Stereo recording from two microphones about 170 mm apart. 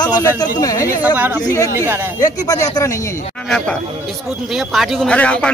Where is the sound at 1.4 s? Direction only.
20° left (ahead or behind).